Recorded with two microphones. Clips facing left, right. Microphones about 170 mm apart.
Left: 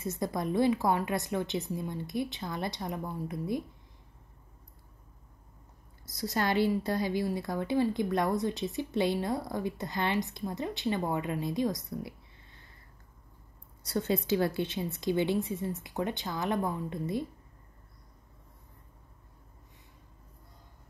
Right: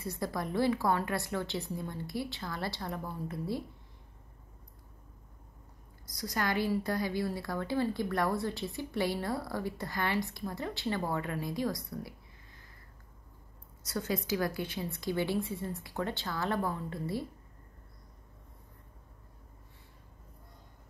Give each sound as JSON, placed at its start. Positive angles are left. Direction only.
{"t": 0.0, "sound": "a woman's voice", "side_deg": 20}
{"t": 6.0, "sound": "a woman's voice", "side_deg": 25}
{"t": 13.8, "sound": "a woman's voice", "side_deg": 25}